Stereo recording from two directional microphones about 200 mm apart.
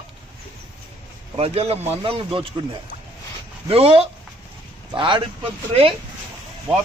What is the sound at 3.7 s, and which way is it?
A man's voice, 30° right (ahead or behind).